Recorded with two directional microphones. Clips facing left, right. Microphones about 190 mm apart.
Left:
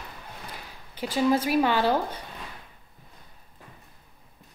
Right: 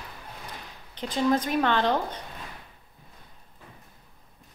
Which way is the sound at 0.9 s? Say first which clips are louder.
Left 1 dB; 10° left (ahead or behind).